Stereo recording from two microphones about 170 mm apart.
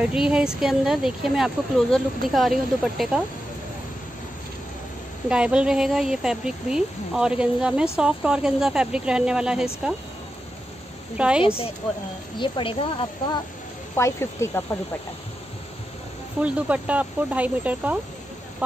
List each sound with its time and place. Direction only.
0.0 s speech: 5° right (ahead or behind)
5.3 s speech: 5° right (ahead or behind)
11.1 s speech: 5° right (ahead or behind)
11.4 s a woman's voice: 35° left (ahead or behind)
13.9 s speech: 15° left (ahead or behind)
16.3 s speech: 10° right (ahead or behind)